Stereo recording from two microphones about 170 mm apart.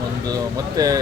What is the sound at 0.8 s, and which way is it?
Speech, 20° right (ahead or behind).